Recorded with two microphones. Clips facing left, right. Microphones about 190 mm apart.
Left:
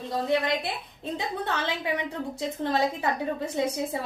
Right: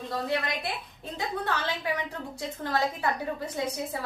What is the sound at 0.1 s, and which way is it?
Speech, 25° left (ahead or behind).